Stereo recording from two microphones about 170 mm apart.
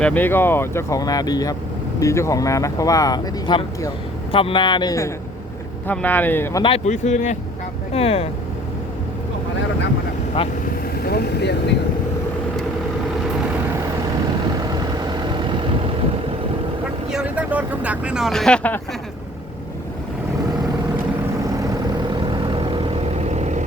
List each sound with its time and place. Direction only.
0.0 s speech: 10° left (ahead or behind)
5.9 s speech: 10° left (ahead or behind)
6.6 s speech: 35° left (ahead or behind)
10.4 s speech: 35° left (ahead or behind)
11.0 s vehicle: 65° left (ahead or behind)
14.7 s vehicle: 25° right (ahead or behind)
17.1 s speech: 5° right (ahead or behind)
21.6 s vehicle: 25° right (ahead or behind); by 23.6 s 40° right (ahead or behind)